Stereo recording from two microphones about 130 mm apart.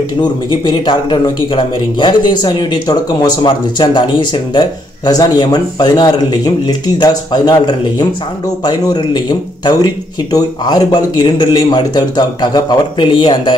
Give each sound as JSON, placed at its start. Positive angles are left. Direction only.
{"t": 0.2, "sound": "a man's voice", "side_deg": 35}